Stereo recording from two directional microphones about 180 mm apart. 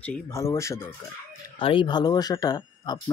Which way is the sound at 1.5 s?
30° left (ahead or behind).